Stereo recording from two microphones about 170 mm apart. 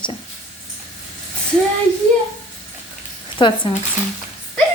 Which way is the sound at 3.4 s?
30° left (ahead or behind).